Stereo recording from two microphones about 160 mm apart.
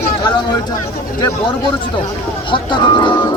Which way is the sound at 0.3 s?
25° left (ahead or behind).